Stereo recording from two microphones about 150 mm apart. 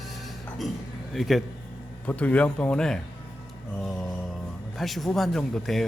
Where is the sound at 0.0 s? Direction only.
Centre (ahead or behind).